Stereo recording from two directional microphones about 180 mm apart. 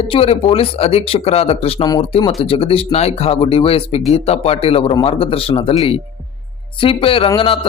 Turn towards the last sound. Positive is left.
turn(degrees=30)  # may be behind; listen again after turning